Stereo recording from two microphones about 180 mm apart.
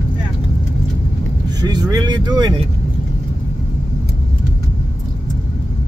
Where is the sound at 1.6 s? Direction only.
20° right (ahead or behind).